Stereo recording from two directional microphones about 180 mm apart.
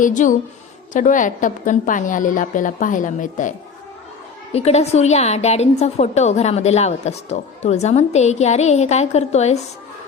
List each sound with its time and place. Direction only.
0.0 s a woman's voice: 45° left (ahead or behind)
4.5 s a woman's voice: 35° left (ahead or behind)